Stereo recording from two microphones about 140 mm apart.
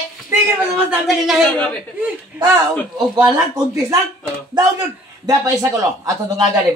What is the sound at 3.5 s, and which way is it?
Speech, 20° right (ahead or behind).